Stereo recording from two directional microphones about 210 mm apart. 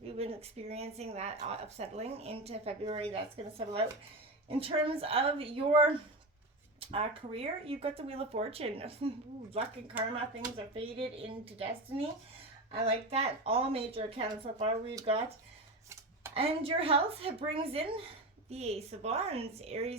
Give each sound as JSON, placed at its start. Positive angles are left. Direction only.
{"t": 0.2, "sound": "speech", "side_deg": -30}
{"t": 16.3, "sound": "speech", "side_deg": -25}